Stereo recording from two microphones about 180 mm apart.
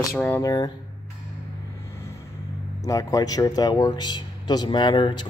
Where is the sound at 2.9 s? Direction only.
20° left (ahead or behind).